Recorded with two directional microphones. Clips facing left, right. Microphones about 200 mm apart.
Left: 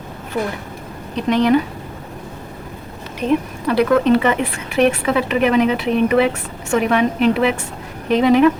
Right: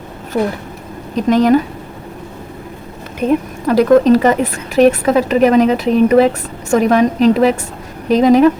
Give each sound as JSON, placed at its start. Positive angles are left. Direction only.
{"t": 0.3, "sound": "a woman's voice", "side_deg": -40}
{"t": 3.2, "sound": "speech", "side_deg": -45}